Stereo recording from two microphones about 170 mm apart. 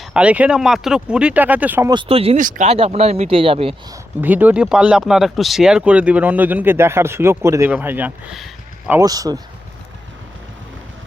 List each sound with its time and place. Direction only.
0.0 s speech: 5° right (ahead or behind)
1.9 s speech: 30° right (ahead or behind)
2.4 s speech: 50° right (ahead or behind)
2.6 s speech: 35° right (ahead or behind)
4.2 s speech: 10° right (ahead or behind)
8.9 s speech: 20° right (ahead or behind)